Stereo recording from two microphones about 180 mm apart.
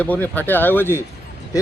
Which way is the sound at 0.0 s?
10° left (ahead or behind).